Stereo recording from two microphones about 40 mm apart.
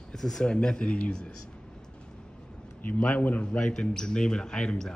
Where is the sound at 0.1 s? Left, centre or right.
Centre.